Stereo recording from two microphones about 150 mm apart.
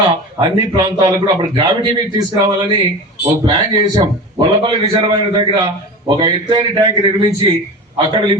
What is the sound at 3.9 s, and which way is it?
Speech, 30° right (ahead or behind).